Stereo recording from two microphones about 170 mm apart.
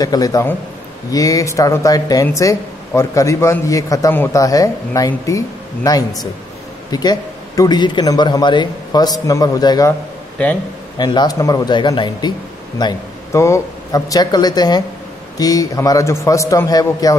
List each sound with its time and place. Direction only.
0.0 s speech: 20° left (ahead or behind)
11.0 s speech: 25° left (ahead or behind)